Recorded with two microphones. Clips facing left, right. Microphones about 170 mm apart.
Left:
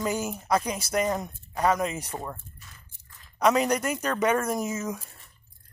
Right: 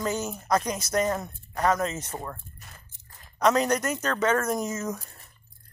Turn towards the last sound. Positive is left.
turn(degrees=5)  # may be behind; listen again after turning